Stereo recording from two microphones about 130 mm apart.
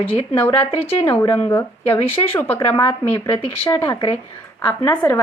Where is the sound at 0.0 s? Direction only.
45° left (ahead or behind).